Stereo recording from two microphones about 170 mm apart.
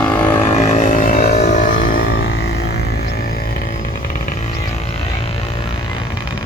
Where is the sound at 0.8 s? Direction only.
50° left (ahead or behind).